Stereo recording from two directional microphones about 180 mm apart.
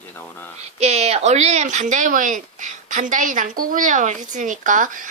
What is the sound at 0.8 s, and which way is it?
Speech, 35° right (ahead or behind).